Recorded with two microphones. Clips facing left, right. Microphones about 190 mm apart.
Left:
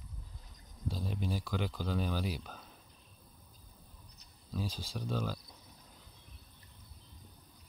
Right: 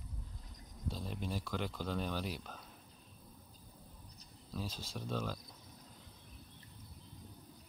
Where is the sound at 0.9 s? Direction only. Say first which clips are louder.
Left 4 dB; centre (ahead or behind).